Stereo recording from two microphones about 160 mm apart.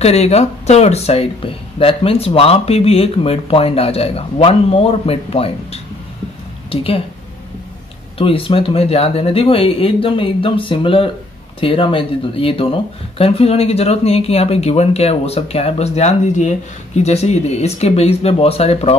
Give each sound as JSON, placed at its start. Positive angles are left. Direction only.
{"t": 0.0, "sound": "speech", "side_deg": 40}
{"t": 8.2, "sound": "speech", "side_deg": 35}